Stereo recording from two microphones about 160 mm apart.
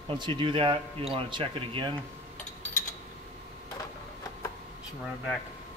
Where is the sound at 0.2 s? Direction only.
30° right (ahead or behind).